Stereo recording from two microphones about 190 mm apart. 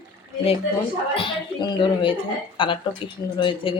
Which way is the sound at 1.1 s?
25° left (ahead or behind).